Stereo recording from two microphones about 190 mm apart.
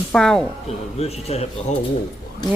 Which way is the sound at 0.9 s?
35° left (ahead or behind).